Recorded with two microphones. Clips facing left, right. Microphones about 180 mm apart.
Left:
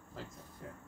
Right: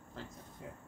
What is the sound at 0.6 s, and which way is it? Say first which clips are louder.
Speech: even; 15° right (ahead or behind).